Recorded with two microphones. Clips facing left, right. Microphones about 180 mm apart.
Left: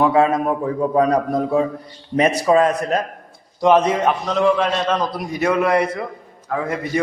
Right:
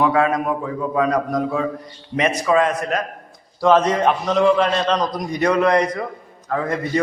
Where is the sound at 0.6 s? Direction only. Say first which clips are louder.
Left 3 dB; 40° left (ahead or behind).